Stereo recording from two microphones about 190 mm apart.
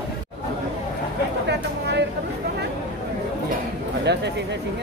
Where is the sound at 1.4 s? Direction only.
65° right (ahead or behind).